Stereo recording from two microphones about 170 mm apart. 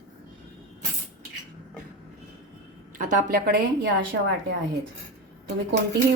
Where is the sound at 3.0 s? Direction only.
50° right (ahead or behind).